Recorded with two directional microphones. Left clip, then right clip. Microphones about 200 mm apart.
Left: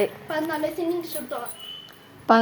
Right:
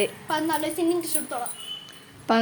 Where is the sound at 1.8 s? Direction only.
Centre (ahead or behind).